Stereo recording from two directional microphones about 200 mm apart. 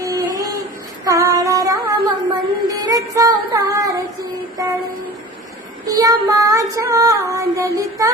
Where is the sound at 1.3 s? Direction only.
15° right (ahead or behind).